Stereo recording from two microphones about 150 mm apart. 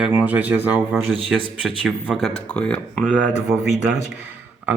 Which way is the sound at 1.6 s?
Centre (ahead or behind).